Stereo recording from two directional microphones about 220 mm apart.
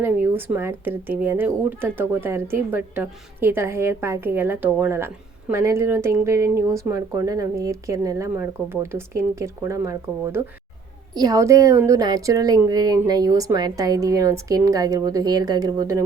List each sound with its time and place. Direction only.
0.0 s a woman's voice: 10° right (ahead or behind)